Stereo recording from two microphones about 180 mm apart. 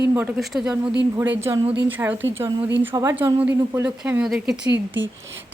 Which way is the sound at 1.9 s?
10° right (ahead or behind).